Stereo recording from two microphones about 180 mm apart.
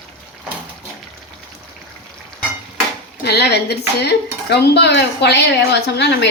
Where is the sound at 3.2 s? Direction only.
65° left (ahead or behind).